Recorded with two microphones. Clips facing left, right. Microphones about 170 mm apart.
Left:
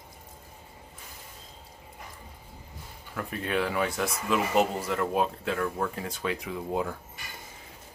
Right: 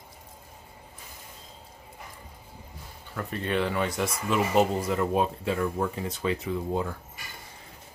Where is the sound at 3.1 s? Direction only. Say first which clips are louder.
Right 1 dB; 5° left (ahead or behind).